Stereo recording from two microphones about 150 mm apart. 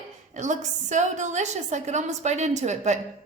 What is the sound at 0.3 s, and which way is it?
A woman's voice, 55° right (ahead or behind).